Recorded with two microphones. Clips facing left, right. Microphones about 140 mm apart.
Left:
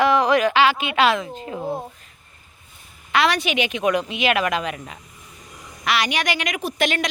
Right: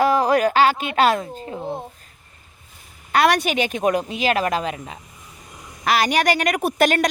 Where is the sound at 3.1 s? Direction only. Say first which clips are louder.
Right 2 dB; 50° right (ahead or behind); by 5.0 s 30° right (ahead or behind).